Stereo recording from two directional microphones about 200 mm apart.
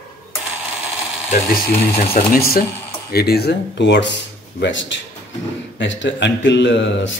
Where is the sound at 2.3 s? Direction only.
50° left (ahead or behind).